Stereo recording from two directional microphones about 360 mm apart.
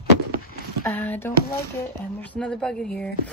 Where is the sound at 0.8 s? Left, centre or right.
Centre.